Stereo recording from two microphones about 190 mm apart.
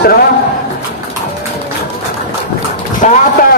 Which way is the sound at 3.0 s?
40° left (ahead or behind).